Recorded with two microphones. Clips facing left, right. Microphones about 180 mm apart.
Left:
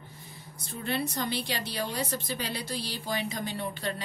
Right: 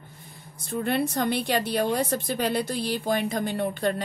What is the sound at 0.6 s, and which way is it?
Speech, 55° right (ahead or behind).